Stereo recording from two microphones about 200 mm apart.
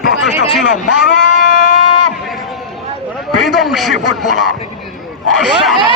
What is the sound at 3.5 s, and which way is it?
A man's voice, centre (ahead or behind).